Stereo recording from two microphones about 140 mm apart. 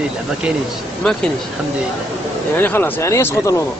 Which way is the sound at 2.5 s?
15° left (ahead or behind).